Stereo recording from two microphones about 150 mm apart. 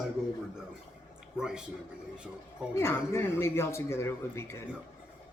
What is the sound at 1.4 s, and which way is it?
A man's voice, 5° right (ahead or behind).